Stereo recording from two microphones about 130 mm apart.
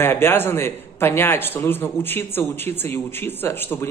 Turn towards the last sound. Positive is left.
turn(degrees=15)  # may be behind; listen again after turning